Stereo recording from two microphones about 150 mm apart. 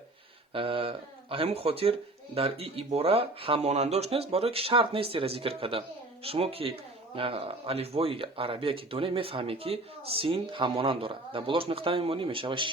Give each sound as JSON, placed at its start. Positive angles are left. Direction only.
{"t": 0.5, "sound": "speech", "side_deg": -35}